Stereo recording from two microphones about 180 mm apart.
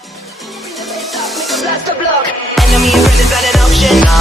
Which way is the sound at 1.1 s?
Centre (ahead or behind).